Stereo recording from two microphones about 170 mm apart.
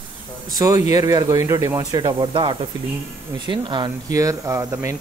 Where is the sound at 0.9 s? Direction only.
20° right (ahead or behind).